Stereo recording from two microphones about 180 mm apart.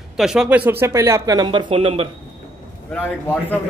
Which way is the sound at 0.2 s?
5° right (ahead or behind).